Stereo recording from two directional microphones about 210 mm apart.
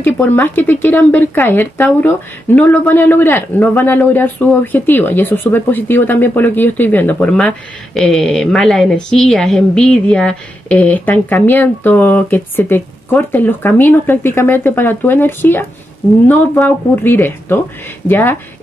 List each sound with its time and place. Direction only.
0.0 s speech: 10° left (ahead or behind)